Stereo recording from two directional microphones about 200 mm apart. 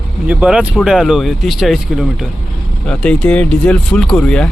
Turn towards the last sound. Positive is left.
turn(degrees=5)  # may be behind; listen again after turning